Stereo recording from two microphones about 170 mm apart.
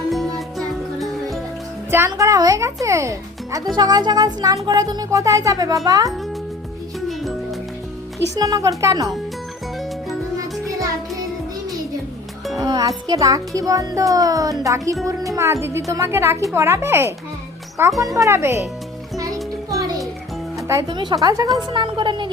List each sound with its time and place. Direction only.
0.1 s music: centre (ahead or behind)
1.9 s a child's voice: 15° right (ahead or behind)
7.1 s music: centre (ahead or behind)
8.4 s speech: 20° right (ahead or behind)
10.3 s music: 20° right (ahead or behind)
12.5 s music: 20° right (ahead or behind)
13.1 s a child's voice: 20° right (ahead or behind)
19.1 s music: 20° right (ahead or behind)
20.7 s speech: 20° right (ahead or behind)